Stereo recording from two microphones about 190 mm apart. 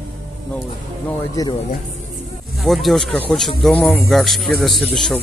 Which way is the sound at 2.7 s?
Centre (ahead or behind).